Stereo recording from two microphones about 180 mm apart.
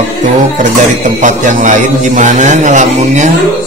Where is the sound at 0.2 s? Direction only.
45° right (ahead or behind).